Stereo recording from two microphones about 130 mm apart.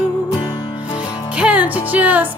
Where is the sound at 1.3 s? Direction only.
10° right (ahead or behind).